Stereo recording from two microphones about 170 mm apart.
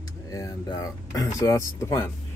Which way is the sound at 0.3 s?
20° left (ahead or behind).